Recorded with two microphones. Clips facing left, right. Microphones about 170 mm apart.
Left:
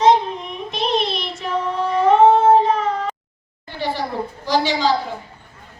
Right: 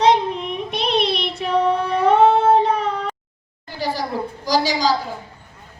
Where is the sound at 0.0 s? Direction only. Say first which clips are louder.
Left 1 dB; 65° right (ahead or behind).